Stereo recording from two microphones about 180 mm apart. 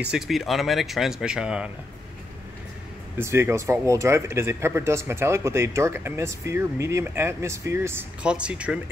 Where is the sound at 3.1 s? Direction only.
15° right (ahead or behind).